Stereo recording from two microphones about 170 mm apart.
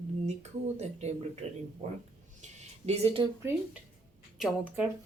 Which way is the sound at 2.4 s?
40° right (ahead or behind).